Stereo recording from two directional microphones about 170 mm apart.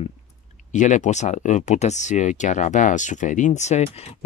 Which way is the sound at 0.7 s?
45° left (ahead or behind).